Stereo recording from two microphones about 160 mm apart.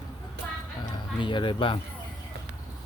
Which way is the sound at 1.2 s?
30° left (ahead or behind).